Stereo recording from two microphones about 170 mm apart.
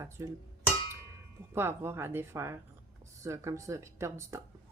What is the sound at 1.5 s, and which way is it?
Speech, 15° right (ahead or behind).